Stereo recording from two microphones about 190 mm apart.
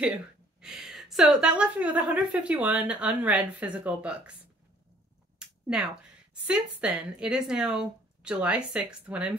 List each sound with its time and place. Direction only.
0.6 s a woman's voice: 5° right (ahead or behind)
5.4 s a sound: 5° right (ahead or behind)
6.4 s speech: 5° right (ahead or behind)